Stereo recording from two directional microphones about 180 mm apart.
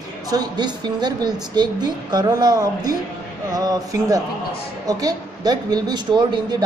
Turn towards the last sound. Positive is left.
turn(degrees=-25)  # may be behind; listen again after turning